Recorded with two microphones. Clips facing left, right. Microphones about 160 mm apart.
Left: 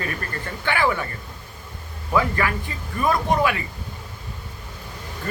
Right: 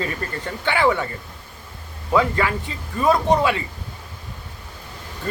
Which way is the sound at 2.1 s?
20° right (ahead or behind).